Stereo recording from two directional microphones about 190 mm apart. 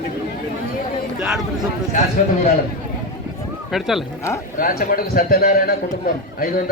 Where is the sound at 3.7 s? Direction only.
Centre (ahead or behind).